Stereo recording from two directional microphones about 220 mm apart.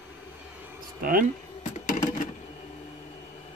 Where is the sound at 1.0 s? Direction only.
40° right (ahead or behind).